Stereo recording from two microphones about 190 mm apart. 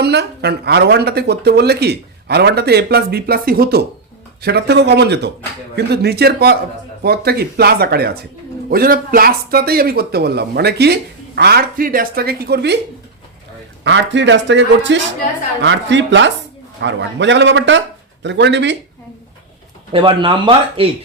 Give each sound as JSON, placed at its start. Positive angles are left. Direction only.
{"t": 0.0, "sound": "speech", "side_deg": -60}
{"t": 13.8, "sound": "a man's voice", "side_deg": -70}
{"t": 19.9, "sound": "speech", "side_deg": -25}